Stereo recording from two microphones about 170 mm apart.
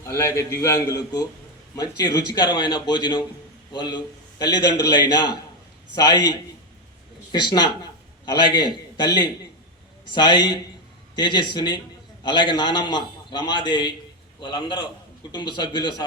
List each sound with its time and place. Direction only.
0.0 s a man's voice: 15° left (ahead or behind)
6.0 s a man's voice: 25° left (ahead or behind)